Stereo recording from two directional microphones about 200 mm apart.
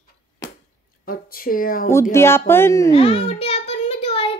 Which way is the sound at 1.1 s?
45° left (ahead or behind).